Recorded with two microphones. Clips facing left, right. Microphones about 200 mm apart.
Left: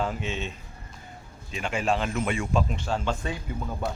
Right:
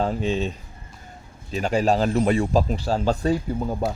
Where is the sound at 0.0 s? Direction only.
35° right (ahead or behind).